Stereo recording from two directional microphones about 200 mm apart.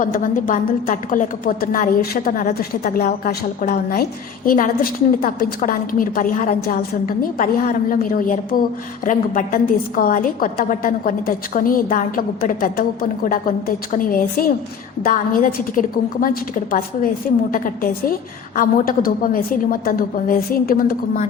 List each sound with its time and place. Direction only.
0.0 s a woman's voice: 40° left (ahead or behind)
18.5 s a woman's voice: 45° left (ahead or behind)